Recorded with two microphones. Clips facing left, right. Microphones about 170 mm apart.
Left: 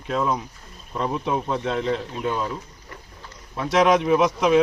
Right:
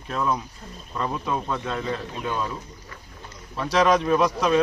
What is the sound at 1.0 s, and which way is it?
Speech, 20° left (ahead or behind).